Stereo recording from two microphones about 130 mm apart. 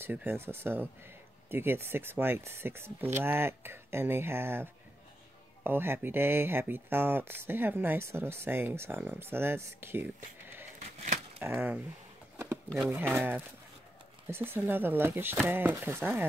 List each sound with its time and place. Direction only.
0.0 s speech: 15° right (ahead or behind)
11.4 s speech: 15° right (ahead or behind)
12.9 s speech: 15° right (ahead or behind)